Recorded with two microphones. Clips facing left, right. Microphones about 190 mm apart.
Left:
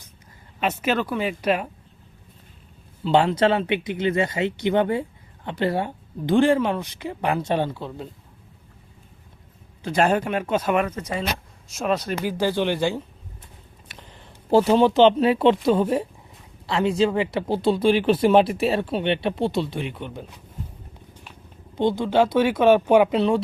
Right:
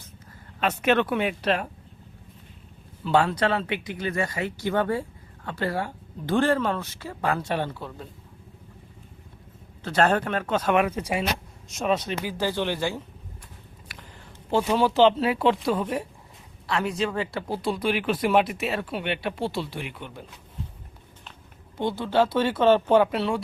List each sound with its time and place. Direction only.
0.6 s speech: 5° left (ahead or behind)
3.0 s speech: 20° left (ahead or behind)
9.8 s speech: 10° left (ahead or behind)
10.8 s speech: 10° right (ahead or behind)
11.7 s speech: centre (ahead or behind)
12.4 s speech: 15° left (ahead or behind)
13.9 s a sound: 25° left (ahead or behind)
14.8 s speech: 20° left (ahead or behind)
21.8 s speech: 15° left (ahead or behind)